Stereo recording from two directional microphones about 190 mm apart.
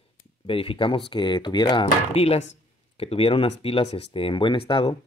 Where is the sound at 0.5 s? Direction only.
30° left (ahead or behind).